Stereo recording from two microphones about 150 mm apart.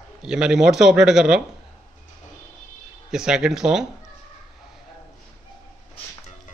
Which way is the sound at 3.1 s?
5° right (ahead or behind).